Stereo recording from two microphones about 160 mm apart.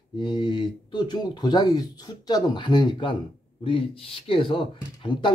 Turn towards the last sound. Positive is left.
turn(degrees=30)  # may be behind; listen again after turning